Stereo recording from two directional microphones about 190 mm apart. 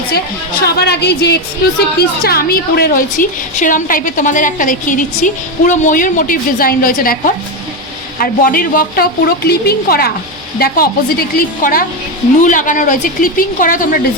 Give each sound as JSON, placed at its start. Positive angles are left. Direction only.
{"t": 0.6, "sound": "a woman's voice", "side_deg": 60}